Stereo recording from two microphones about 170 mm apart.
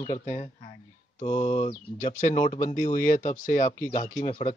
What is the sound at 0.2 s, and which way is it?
Speech, 50° left (ahead or behind).